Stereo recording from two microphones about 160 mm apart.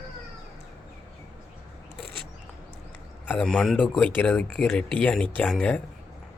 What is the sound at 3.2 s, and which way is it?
Speech, 5° left (ahead or behind).